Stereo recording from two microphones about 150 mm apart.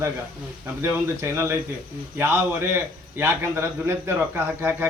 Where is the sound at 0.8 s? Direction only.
15° right (ahead or behind).